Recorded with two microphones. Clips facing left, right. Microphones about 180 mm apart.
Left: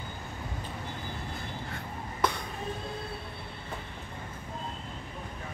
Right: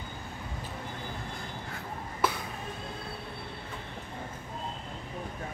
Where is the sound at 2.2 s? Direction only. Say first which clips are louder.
Even; 5° right (ahead or behind).